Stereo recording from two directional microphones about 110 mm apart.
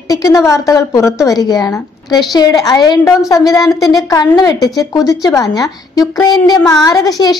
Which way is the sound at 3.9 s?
35° left (ahead or behind).